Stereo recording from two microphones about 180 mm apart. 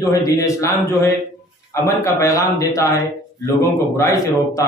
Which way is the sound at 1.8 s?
15° left (ahead or behind).